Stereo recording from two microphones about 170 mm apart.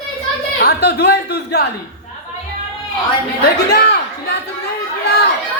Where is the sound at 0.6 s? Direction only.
70° left (ahead or behind).